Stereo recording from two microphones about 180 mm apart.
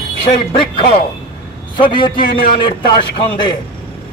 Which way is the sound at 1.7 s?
25° left (ahead or behind).